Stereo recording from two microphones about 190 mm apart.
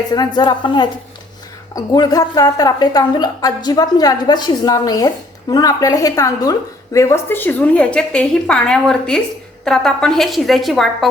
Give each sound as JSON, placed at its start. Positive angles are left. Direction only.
{"t": 0.1, "sound": "a woman's voice", "side_deg": 20}